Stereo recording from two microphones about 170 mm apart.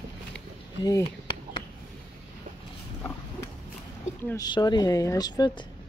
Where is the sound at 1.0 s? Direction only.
30° left (ahead or behind).